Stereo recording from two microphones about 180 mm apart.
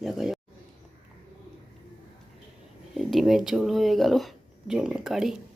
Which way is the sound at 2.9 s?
Centre (ahead or behind).